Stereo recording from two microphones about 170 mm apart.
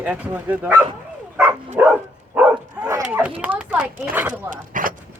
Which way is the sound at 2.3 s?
10° right (ahead or behind).